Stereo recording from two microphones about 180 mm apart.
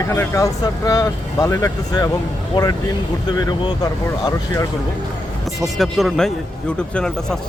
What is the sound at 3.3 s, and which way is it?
Speech, 25° left (ahead or behind).